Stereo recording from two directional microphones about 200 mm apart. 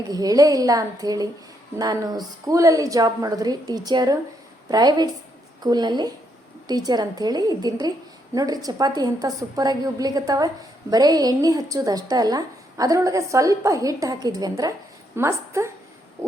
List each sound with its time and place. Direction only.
0.1 s a woman's voice: 20° right (ahead or behind)